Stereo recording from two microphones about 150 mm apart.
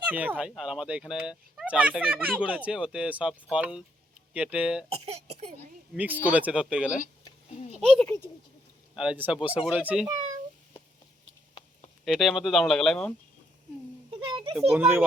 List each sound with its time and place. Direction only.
0.0 s fowl: 10° right (ahead or behind)
4.9 s speech: 45° right (ahead or behind)
5.9 s fowl: 10° right (ahead or behind)
8.0 s speech: 15° left (ahead or behind)
9.0 s fowl: 10° right (ahead or behind)
12.0 s speech: centre (ahead or behind)
14.1 s a sound: 35° right (ahead or behind)
14.7 s fowl: 15° right (ahead or behind)